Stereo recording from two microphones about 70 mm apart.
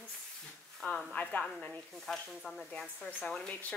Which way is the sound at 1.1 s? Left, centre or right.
Left.